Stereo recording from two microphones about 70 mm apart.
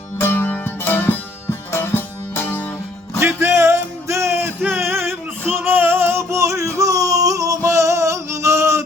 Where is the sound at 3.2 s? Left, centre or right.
Right.